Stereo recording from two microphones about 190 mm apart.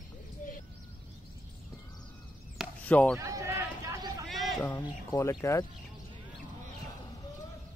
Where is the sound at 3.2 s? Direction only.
15° right (ahead or behind).